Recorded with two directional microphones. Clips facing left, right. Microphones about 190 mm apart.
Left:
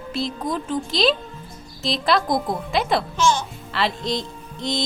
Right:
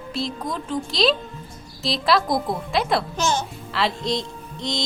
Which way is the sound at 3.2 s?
45° right (ahead or behind).